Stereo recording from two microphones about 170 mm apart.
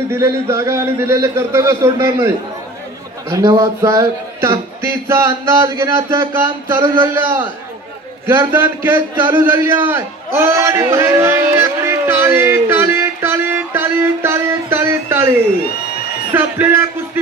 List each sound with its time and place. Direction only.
0.1 s a man's voice: 15° right (ahead or behind)
16.3 s a man's voice: 10° right (ahead or behind)